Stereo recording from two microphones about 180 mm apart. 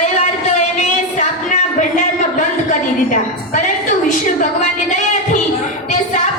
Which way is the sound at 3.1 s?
45° left (ahead or behind).